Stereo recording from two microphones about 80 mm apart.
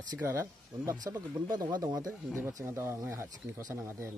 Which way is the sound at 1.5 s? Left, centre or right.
Right.